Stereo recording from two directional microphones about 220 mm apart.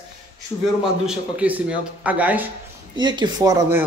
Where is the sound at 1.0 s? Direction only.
5° right (ahead or behind).